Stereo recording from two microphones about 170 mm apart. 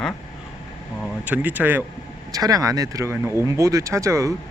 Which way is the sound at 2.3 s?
20° right (ahead or behind).